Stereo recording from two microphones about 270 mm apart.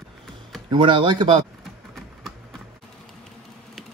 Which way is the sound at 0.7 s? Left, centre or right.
Centre.